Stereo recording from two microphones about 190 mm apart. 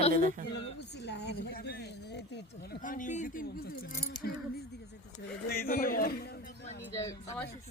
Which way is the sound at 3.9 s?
55° left (ahead or behind).